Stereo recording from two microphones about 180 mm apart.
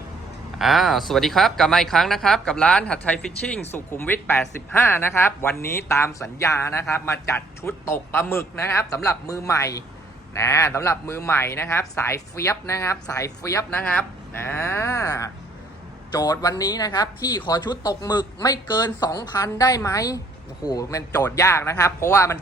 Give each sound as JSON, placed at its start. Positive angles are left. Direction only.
{"t": 0.6, "sound": "a man's voice", "side_deg": 0}